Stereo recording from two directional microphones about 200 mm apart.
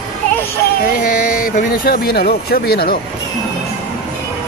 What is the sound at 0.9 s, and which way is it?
Speech, 45° left (ahead or behind).